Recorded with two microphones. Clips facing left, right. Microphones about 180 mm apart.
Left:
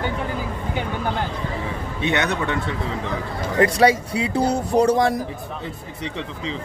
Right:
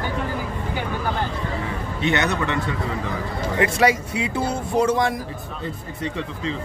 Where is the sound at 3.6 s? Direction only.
35° left (ahead or behind).